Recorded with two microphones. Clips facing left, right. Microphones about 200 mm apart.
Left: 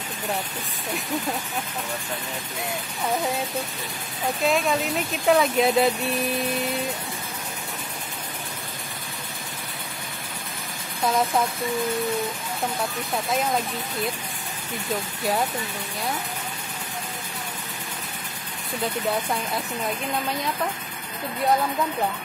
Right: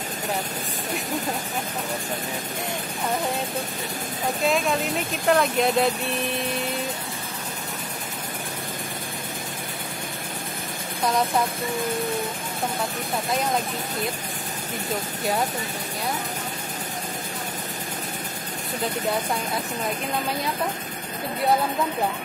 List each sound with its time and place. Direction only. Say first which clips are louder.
4.5 s speech: left 1 dB; centre (ahead or behind)
11.1 s speech: even; centre (ahead or behind)